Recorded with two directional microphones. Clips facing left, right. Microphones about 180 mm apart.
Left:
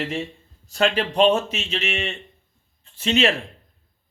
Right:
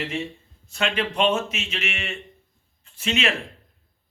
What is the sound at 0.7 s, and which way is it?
A man's voice, 35° left (ahead or behind).